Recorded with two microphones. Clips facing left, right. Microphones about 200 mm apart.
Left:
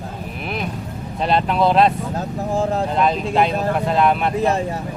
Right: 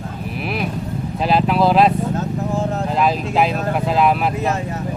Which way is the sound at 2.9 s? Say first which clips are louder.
Right 1 dB; 5° right (ahead or behind).